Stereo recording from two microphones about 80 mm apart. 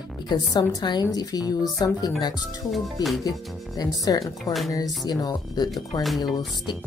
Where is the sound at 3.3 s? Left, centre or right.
Left.